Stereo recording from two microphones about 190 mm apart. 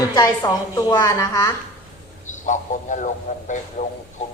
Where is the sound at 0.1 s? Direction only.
20° left (ahead or behind).